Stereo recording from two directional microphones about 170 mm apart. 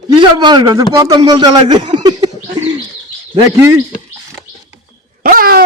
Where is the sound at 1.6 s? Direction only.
35° right (ahead or behind).